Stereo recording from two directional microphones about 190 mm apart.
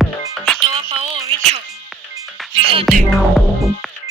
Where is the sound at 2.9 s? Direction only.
Centre (ahead or behind).